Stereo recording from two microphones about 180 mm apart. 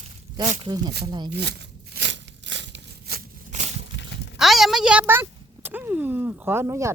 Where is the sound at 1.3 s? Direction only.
70° right (ahead or behind).